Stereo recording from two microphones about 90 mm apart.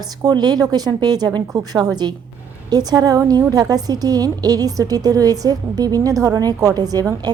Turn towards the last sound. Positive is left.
turn(degrees=-45)  # may be behind; listen again after turning